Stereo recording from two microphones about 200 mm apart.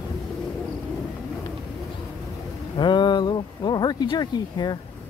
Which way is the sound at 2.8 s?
20° left (ahead or behind).